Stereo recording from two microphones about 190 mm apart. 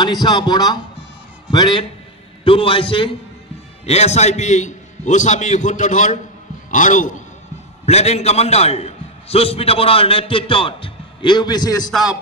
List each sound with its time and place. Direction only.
0.0 s a man's voice: 20° left (ahead or behind)
11.9 s rapping: centre (ahead or behind)